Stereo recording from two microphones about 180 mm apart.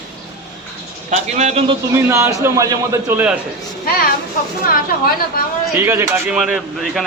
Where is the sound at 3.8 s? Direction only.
55° left (ahead or behind).